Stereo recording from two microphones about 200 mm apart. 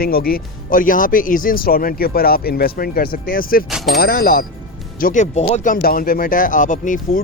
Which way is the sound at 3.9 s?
50° left (ahead or behind).